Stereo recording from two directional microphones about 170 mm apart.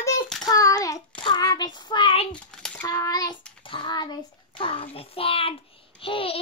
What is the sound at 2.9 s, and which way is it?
Child singing, 20° left (ahead or behind).